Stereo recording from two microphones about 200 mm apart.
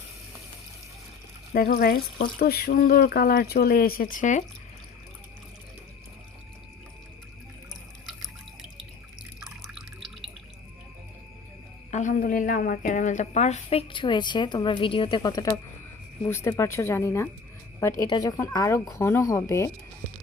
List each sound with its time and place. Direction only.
1.5 s speech: 50° left (ahead or behind)
9.4 s drip: centre (ahead or behind)
11.9 s a woman's voice: 40° left (ahead or behind); by 19.7 s 15° left (ahead or behind)